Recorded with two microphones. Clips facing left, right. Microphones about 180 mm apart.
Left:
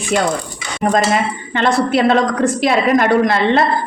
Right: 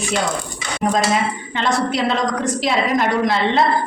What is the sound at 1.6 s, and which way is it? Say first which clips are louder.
A woman's voice: left 5 dB; 55° left (ahead or behind).